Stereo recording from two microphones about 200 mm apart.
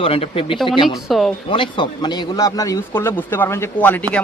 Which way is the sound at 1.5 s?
25° left (ahead or behind).